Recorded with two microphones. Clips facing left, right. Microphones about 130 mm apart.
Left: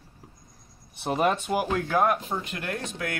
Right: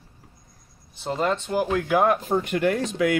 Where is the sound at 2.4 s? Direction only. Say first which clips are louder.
Right 10 dB; 75° right (ahead or behind).